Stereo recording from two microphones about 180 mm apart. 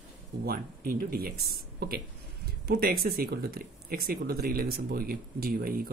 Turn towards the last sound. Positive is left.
turn(degrees=-55)  # may be behind; listen again after turning